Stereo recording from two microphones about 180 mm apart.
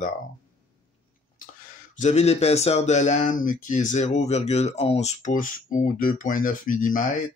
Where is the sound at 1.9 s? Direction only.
40° left (ahead or behind).